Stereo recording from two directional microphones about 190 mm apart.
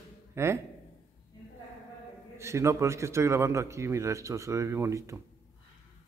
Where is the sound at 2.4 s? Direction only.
15° right (ahead or behind).